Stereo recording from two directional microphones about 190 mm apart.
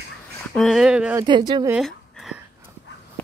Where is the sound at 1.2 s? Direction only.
25° right (ahead or behind).